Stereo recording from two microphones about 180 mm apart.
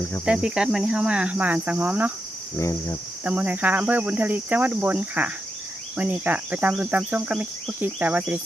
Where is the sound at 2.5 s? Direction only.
15° left (ahead or behind).